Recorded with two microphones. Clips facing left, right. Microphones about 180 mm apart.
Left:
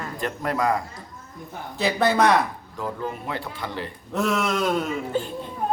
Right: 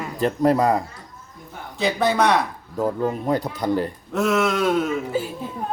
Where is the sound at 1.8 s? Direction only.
Centre (ahead or behind).